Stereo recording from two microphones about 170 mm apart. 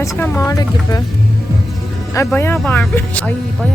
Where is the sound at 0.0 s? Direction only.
15° left (ahead or behind).